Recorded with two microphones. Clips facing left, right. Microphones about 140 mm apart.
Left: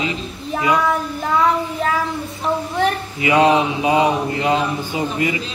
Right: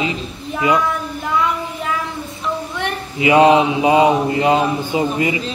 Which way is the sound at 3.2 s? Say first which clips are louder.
Right 3 dB; 20° right (ahead or behind).